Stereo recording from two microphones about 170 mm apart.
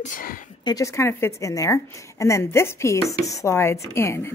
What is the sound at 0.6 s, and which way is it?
A woman's voice, 20° left (ahead or behind).